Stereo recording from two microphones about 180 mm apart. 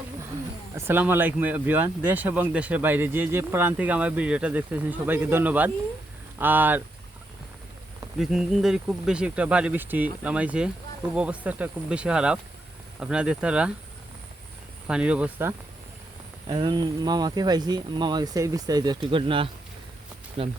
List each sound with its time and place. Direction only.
0.8 s speech: 10° right (ahead or behind)
8.2 s speech: centre (ahead or behind)
14.8 s speech: 5° right (ahead or behind)
16.5 s speech: 25° right (ahead or behind)